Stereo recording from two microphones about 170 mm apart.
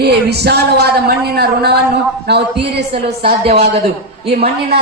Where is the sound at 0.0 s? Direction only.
75° right (ahead or behind).